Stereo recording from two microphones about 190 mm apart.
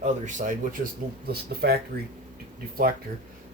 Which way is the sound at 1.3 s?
55° right (ahead or behind).